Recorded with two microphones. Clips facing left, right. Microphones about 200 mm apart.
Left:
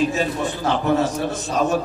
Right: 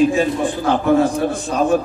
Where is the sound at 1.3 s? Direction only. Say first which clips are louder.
Right 3 dB; 40° left (ahead or behind).